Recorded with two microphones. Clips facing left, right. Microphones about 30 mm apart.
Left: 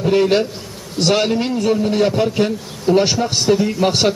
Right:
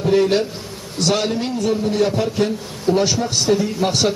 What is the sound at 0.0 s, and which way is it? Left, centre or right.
A man's voice, centre.